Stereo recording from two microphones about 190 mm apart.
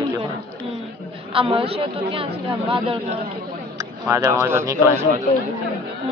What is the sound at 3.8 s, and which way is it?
Speech, 15° right (ahead or behind).